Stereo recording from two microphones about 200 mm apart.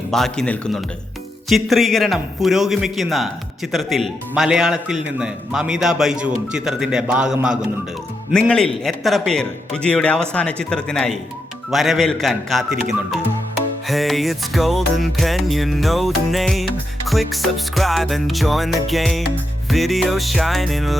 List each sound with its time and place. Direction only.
0.1 s a man's voice: centre (ahead or behind)